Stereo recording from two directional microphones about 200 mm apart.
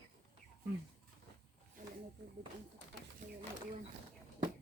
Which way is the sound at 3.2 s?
40° right (ahead or behind).